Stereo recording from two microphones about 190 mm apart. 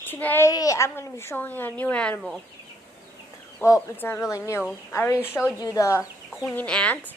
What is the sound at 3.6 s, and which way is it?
A woman's voice, 15° left (ahead or behind).